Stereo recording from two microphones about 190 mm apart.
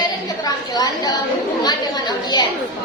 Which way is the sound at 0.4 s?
20° left (ahead or behind).